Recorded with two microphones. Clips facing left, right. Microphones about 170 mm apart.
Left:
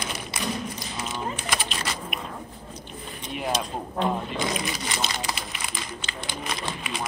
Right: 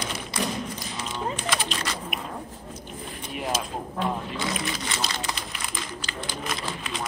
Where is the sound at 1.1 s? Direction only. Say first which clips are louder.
Right 2 dB; 5° left (ahead or behind).